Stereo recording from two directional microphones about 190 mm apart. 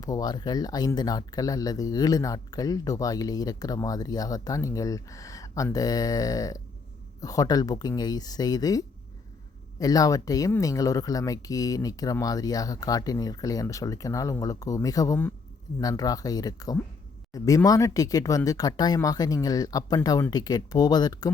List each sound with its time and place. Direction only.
0.0 s speech: 20° left (ahead or behind)